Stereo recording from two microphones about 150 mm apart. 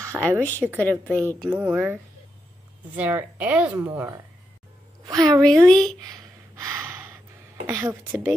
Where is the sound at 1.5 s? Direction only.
10° right (ahead or behind).